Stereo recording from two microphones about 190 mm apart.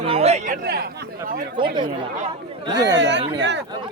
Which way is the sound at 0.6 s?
55° right (ahead or behind).